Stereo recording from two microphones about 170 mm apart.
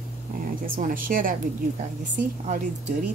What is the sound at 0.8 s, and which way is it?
A woman's voice, 55° right (ahead or behind).